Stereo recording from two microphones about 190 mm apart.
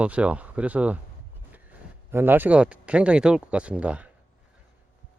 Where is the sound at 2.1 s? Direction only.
10° right (ahead or behind).